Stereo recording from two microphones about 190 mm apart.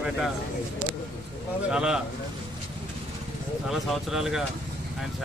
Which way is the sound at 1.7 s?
5° right (ahead or behind).